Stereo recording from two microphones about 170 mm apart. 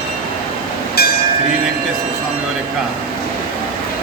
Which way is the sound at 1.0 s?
65° left (ahead or behind).